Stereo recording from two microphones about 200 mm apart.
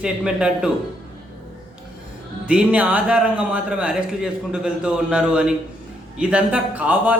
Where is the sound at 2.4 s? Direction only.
5° right (ahead or behind).